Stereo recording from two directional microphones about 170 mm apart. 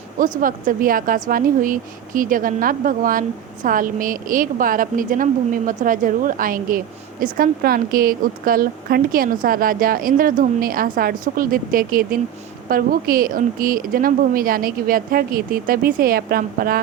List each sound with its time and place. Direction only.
0.2 s speech: 55° right (ahead or behind)